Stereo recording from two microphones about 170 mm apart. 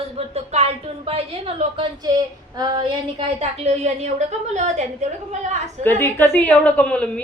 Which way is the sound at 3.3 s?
40° right (ahead or behind).